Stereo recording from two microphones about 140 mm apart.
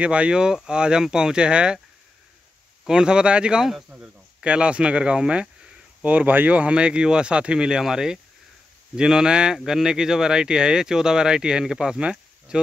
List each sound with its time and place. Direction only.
0.0 s speech: 10° right (ahead or behind)
2.9 s speech: 5° right (ahead or behind)